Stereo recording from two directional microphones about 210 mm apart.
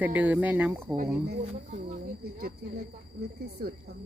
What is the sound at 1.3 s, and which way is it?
Speech, 40° right (ahead or behind).